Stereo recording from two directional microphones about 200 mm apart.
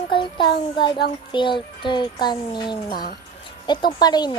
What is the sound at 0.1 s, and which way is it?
Child singing, 25° left (ahead or behind).